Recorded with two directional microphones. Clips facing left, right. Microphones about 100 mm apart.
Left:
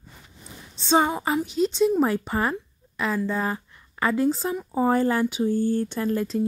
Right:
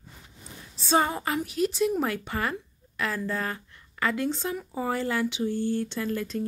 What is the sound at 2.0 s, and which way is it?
A woman's voice, 35° left (ahead or behind).